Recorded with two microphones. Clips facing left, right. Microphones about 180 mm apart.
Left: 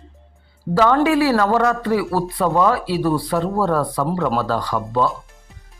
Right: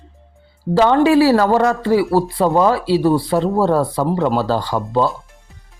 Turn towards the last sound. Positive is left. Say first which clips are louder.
# right 2 dB
turn(degrees=-30)  # may be behind; listen again after turning